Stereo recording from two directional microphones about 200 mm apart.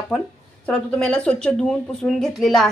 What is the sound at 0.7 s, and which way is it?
A woman's voice, 5° left (ahead or behind).